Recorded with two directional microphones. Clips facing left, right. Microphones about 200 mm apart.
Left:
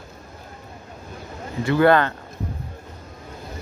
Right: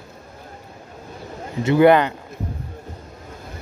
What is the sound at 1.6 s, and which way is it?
Speech, 20° right (ahead or behind).